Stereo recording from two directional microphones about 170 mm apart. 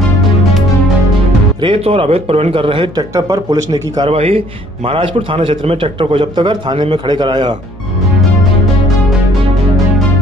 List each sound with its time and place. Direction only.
1.6 s speech: 30° right (ahead or behind)
4.1 s a man's voice: 35° right (ahead or behind)